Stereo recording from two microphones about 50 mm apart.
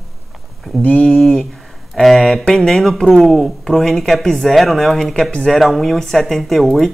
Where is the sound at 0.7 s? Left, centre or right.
Left.